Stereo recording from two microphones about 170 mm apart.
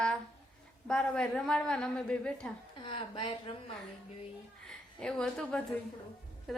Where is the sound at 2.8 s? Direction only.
30° left (ahead or behind).